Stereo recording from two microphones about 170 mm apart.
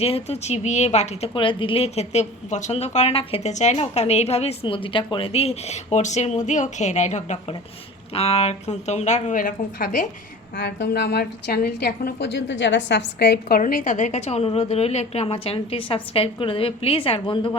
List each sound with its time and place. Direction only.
0.0 s a woman's voice: 35° left (ahead or behind); by 10.1 s 50° left (ahead or behind)
10.6 s a woman's voice: 90° left; by 13.6 s 70° left (ahead or behind)
13.6 s a woman's voice: 50° left (ahead or behind); by 17.5 s 30° left (ahead or behind)